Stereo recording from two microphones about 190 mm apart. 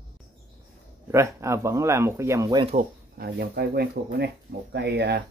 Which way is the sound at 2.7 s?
55° right (ahead or behind).